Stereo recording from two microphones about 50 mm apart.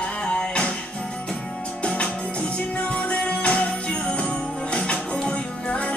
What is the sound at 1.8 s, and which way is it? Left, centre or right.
Music, left.